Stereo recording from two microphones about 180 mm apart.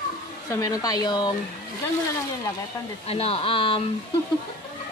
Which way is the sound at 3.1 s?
35° left (ahead or behind).